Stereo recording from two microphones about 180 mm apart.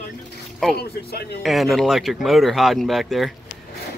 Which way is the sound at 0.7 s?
60° left (ahead or behind).